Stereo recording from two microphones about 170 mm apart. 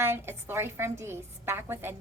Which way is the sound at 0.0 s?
15° right (ahead or behind).